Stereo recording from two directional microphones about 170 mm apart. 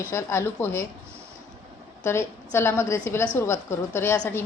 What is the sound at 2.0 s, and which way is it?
A woman's voice, 15° left (ahead or behind).